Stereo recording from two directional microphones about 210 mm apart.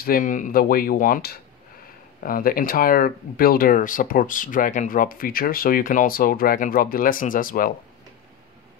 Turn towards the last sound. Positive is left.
turn(degrees=40)  # may be behind; listen again after turning